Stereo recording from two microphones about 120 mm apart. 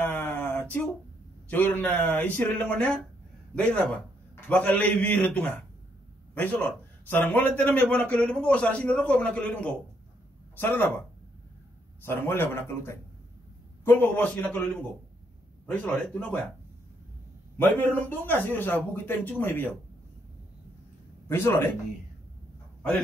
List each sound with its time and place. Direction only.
0.0 s a sound: 15° left (ahead or behind)
1.5 s a man's voice: 15° left (ahead or behind)
12.0 s a man's voice: 20° left (ahead or behind)
17.6 s a man's voice: 15° left (ahead or behind)
21.3 s a man's voice: 20° left (ahead or behind)